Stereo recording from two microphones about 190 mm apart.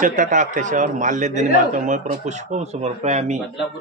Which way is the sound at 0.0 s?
40° right (ahead or behind).